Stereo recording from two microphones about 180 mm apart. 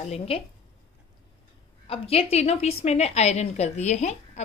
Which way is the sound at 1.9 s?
35° left (ahead or behind).